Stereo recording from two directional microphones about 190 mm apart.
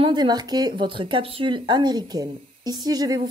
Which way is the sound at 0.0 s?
25° right (ahead or behind).